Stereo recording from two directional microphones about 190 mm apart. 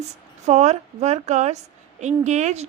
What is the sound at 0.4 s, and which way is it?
A woman's voice, 35° right (ahead or behind).